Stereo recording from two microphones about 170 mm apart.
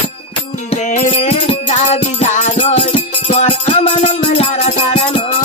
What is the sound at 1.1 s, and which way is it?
Music, 40° left (ahead or behind).